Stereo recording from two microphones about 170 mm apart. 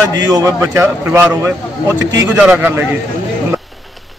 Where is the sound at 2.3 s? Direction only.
5° right (ahead or behind).